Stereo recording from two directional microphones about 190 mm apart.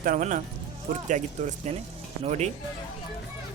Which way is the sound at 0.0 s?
45° right (ahead or behind).